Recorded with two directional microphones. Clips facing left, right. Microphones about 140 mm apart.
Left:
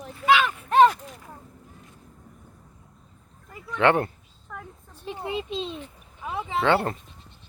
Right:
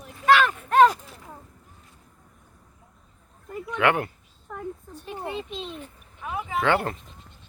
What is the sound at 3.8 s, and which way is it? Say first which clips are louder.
Speech: left 2 dB; 30° left (ahead or behind).